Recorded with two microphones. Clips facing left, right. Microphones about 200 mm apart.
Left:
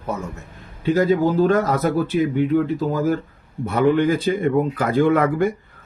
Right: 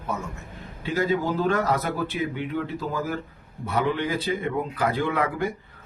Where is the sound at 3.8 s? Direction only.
45° left (ahead or behind).